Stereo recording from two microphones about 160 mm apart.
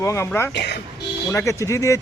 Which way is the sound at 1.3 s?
20° left (ahead or behind).